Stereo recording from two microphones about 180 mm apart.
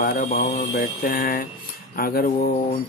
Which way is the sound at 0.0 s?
55° left (ahead or behind).